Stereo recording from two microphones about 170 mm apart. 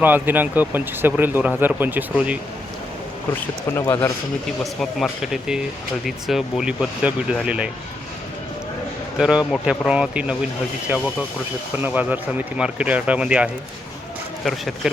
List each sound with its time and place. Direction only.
0.0 s speech: 10° right (ahead or behind)
3.7 s speech: 15° left (ahead or behind)
4.6 s speech: centre (ahead or behind)
9.1 s speech: 5° right (ahead or behind)
11.8 s speech: 10° right (ahead or behind)